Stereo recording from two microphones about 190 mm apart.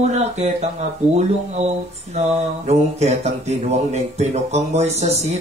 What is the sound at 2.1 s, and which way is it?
Speech, 35° right (ahead or behind).